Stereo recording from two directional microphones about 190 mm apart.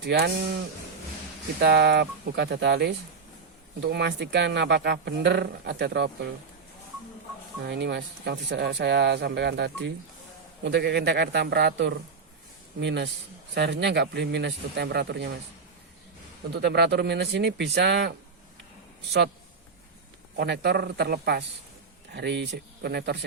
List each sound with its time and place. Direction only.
1.6 s speech: 60° right (ahead or behind)
7.6 s a man's voice: 65° right (ahead or behind)
16.6 s speech: 65° right (ahead or behind)
20.3 s speech: 60° right (ahead or behind)